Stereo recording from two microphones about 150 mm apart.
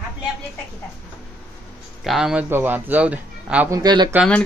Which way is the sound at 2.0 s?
5° right (ahead or behind).